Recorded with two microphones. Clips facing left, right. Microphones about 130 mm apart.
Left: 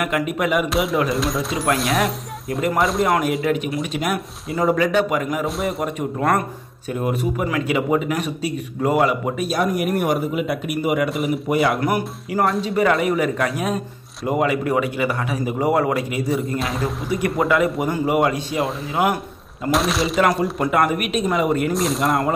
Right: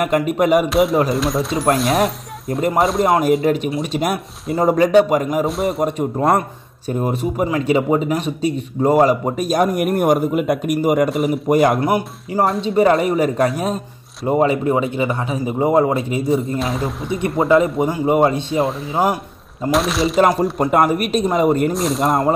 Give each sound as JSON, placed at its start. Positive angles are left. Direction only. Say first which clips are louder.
{"t": 0.0, "sound": "speech", "louder": "right 5 dB", "side_deg": -40}
{"t": 0.7, "sound": "speech", "louder": "right 4 dB", "side_deg": 0}
{"t": 3.4, "sound": "speech", "louder": "right 3 dB", "side_deg": -30}
{"t": 11.1, "sound": "speech", "louder": "right 4 dB", "side_deg": 0}
{"t": 11.4, "sound": "speech", "louder": "right 5 dB", "side_deg": -40}
{"t": 11.8, "sound": "speech", "louder": "right 3 dB", "side_deg": -25}
{"t": 16.5, "sound": "speech", "louder": "right 2 dB", "side_deg": 0}
{"t": 17.1, "sound": "speech", "louder": "right 5 dB", "side_deg": -30}
{"t": 19.7, "sound": "speech", "louder": "right 2 dB", "side_deg": 0}
{"t": 20.2, "sound": "speech", "louder": "right 4 dB", "side_deg": -35}
{"t": 21.7, "sound": "speech", "louder": "right 2 dB", "side_deg": 0}